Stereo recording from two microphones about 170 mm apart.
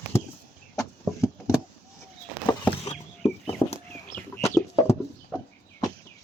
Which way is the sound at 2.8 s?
40° left (ahead or behind).